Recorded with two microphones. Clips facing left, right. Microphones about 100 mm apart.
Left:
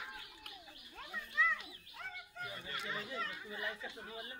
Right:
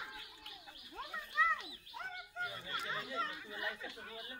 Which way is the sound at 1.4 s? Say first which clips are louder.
Right 1 dB; 20° right (ahead or behind).